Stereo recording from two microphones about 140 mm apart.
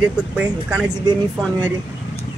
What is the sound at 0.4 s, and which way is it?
Speech, 10° right (ahead or behind).